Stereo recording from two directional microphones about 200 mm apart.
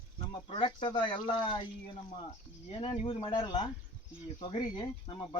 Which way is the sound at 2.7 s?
30° left (ahead or behind).